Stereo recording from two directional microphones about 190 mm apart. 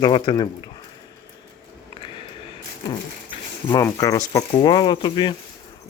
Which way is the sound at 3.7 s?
20° left (ahead or behind).